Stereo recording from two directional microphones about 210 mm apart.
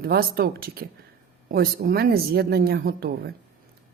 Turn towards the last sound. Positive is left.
turn(degrees=-50)  # may be behind; listen again after turning